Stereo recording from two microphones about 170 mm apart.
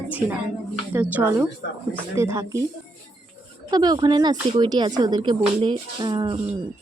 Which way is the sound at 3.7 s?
25° right (ahead or behind).